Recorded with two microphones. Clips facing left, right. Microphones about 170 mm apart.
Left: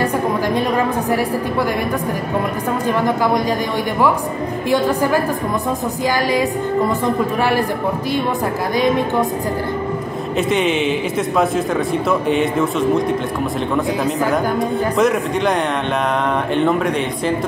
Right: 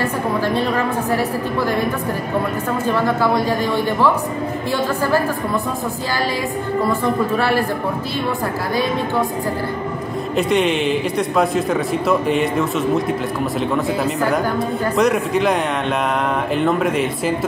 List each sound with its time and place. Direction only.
2.9 s a woman's voice: 15° left (ahead or behind)
4.6 s a woman's voice: 15° left (ahead or behind)
6.9 s a woman's voice: 15° left (ahead or behind)
10.3 s a man's voice: centre (ahead or behind)
15.0 s a man's voice: centre (ahead or behind)
16.5 s a man's voice: centre (ahead or behind)